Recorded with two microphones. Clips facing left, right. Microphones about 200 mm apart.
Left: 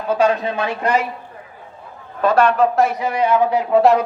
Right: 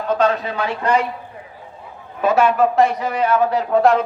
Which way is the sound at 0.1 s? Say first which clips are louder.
Left 1 dB; 10° left (ahead or behind).